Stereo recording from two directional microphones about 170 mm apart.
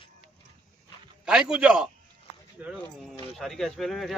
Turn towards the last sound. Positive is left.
turn(degrees=0)  # may be behind; listen again after turning